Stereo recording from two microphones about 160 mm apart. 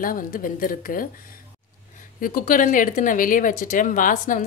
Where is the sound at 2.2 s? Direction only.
60° left (ahead or behind).